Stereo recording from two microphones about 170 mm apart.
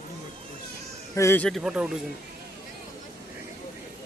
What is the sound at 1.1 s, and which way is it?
Speech, 15° left (ahead or behind).